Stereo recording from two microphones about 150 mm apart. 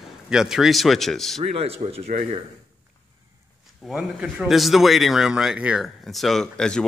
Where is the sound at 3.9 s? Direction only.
5° right (ahead or behind).